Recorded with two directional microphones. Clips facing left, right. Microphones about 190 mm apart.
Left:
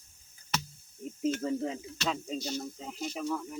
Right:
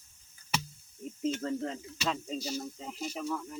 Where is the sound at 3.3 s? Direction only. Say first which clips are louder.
Left 3 dB; 10° left (ahead or behind).